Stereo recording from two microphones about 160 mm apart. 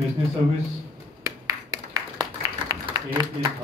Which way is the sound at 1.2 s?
25° right (ahead or behind).